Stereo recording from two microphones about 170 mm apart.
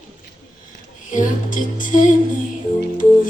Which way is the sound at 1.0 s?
50° left (ahead or behind).